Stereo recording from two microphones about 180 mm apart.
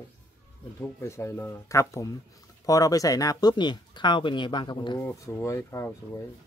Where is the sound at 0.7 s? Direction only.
15° left (ahead or behind).